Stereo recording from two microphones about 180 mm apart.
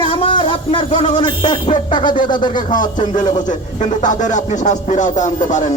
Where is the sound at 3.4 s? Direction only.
45° left (ahead or behind).